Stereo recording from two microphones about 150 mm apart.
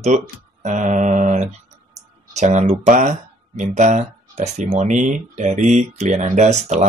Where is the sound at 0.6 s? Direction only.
55° right (ahead or behind).